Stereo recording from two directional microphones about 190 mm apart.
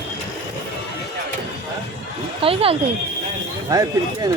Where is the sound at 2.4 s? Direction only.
30° right (ahead or behind).